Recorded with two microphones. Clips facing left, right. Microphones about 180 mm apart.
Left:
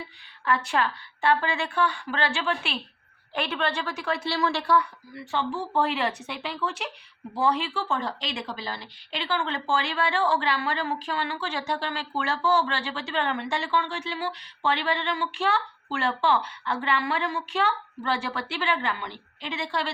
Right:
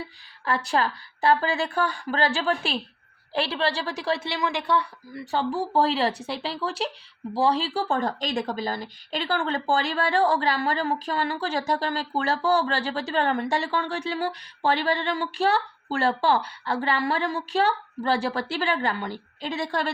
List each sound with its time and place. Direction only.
0.4 s speech: 35° right (ahead or behind)
4.3 s a woman's voice: 15° right (ahead or behind)
5.1 s speech: 40° right (ahead or behind)